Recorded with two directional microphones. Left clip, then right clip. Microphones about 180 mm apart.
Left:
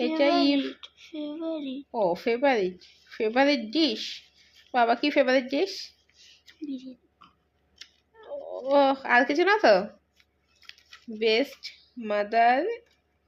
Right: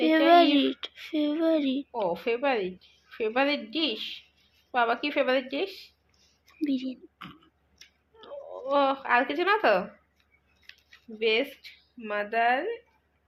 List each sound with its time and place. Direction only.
0.5 s a sound: 10° right (ahead or behind)
2.0 s a woman's voice: 50° left (ahead or behind)
6.6 s speech: 15° right (ahead or behind)
8.5 s a woman's voice: 45° left (ahead or behind)
11.2 s a woman's voice: 45° left (ahead or behind)